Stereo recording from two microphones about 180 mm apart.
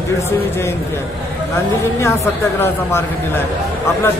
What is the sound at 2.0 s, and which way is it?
A man's voice, 15° left (ahead or behind).